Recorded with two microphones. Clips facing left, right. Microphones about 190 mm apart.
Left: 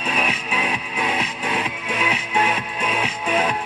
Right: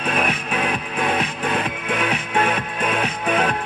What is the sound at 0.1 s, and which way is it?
Music, 55° right (ahead or behind).